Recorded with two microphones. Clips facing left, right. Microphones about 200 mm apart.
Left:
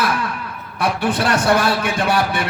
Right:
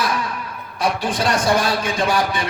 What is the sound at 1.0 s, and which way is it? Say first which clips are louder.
Speech: left 5 dB; 65° left (ahead or behind).